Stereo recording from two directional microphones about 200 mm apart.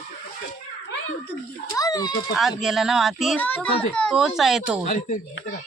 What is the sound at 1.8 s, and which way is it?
Speech, 20° left (ahead or behind).